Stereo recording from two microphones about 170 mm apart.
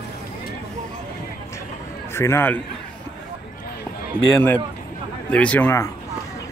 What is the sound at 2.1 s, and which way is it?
Speech, 15° left (ahead or behind).